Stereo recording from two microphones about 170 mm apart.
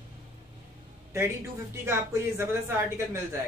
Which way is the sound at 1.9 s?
15° right (ahead or behind).